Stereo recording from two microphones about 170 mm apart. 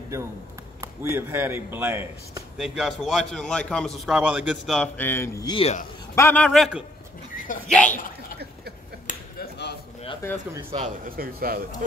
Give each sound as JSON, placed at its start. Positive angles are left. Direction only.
{"t": 0.1, "sound": "speech", "side_deg": -20}
{"t": 2.5, "sound": "a man's voice", "side_deg": 0}
{"t": 4.9, "sound": "a man's voice", "side_deg": 10}
{"t": 9.0, "sound": "a sound", "side_deg": 70}
{"t": 10.2, "sound": "speech", "side_deg": 15}
{"t": 11.1, "sound": "speech", "side_deg": -60}